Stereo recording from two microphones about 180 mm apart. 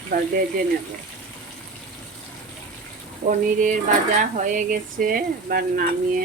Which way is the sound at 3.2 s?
45° right (ahead or behind).